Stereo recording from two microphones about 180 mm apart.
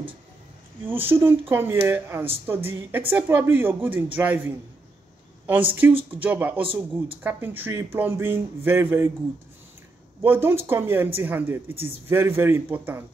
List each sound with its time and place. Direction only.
0.8 s a man's voice: 10° right (ahead or behind)
5.8 s a man's voice: 10° right (ahead or behind)
6.6 s speech: 30° right (ahead or behind)
7.2 s a man's voice: 10° right (ahead or behind)
10.2 s a man's voice: 10° right (ahead or behind)